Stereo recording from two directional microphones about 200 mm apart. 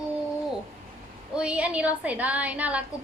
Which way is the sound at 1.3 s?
5° right (ahead or behind).